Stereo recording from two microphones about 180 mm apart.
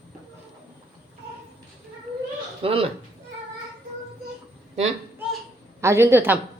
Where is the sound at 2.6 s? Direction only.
30° right (ahead or behind).